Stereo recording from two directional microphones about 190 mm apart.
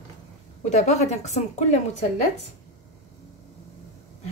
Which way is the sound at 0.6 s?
35° left (ahead or behind).